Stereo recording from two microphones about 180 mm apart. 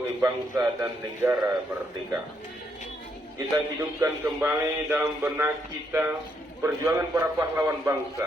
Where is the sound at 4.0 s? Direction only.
10° right (ahead or behind).